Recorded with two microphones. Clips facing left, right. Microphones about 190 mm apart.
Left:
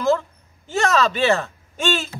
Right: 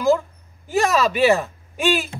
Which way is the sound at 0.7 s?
15° right (ahead or behind).